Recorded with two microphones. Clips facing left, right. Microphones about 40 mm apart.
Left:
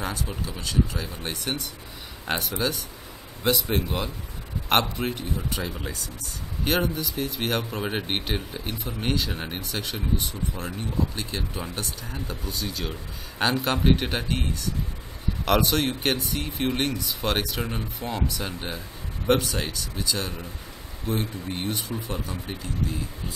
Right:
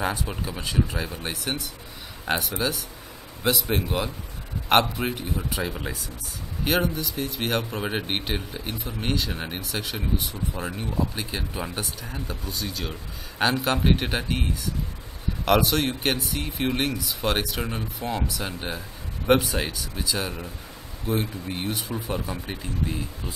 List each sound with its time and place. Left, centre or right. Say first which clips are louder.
0.0 s speech: right 3 dB; centre
1.2 s speech: even; centre
6.6 s speech: right 1 dB; centre; by 23.3 s right